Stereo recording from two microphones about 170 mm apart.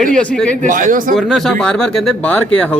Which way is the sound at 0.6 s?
50° right (ahead or behind).